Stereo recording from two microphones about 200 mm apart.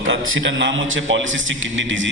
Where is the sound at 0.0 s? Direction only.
70° right (ahead or behind).